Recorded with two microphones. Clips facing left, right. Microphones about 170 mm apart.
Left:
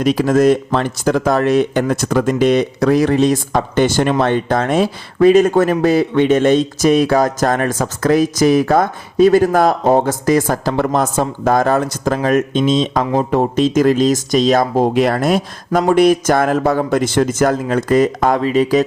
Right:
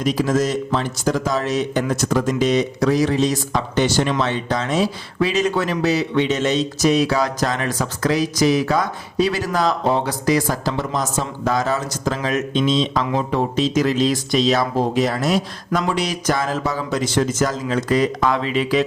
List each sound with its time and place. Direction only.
0.0 s speech: 60° left (ahead or behind); by 18.9 s 40° left (ahead or behind)